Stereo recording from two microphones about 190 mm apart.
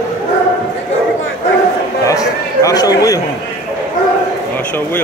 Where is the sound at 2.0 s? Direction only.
20° left (ahead or behind).